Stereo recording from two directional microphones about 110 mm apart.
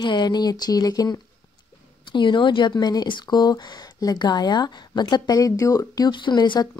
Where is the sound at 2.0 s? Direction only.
45° left (ahead or behind).